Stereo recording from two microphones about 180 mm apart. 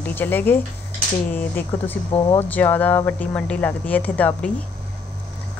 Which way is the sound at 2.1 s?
35° left (ahead or behind).